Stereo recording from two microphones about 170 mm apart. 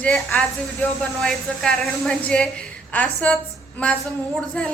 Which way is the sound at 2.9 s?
10° left (ahead or behind).